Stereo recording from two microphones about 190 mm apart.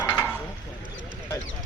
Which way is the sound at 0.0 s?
20° left (ahead or behind).